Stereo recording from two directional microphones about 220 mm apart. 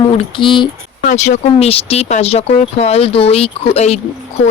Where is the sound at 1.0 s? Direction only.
30° left (ahead or behind).